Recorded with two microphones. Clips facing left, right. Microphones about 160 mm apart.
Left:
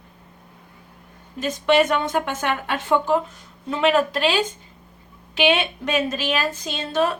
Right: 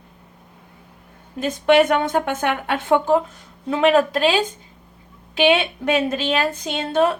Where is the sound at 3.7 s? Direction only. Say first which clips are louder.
Right 3 dB; 40° right (ahead or behind).